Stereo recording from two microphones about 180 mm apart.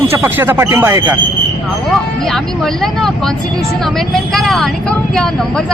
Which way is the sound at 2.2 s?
Centre (ahead or behind).